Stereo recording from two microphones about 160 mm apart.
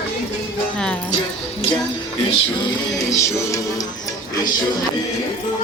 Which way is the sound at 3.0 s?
20° left (ahead or behind).